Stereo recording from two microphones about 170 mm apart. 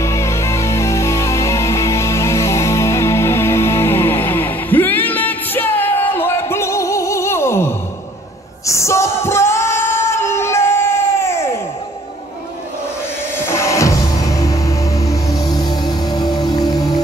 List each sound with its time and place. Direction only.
0.0 s music: 15° left (ahead or behind)
8.6 s singing: 15° left (ahead or behind)
13.5 s music: 15° left (ahead or behind)